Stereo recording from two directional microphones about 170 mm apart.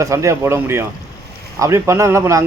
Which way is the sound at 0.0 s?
15° right (ahead or behind).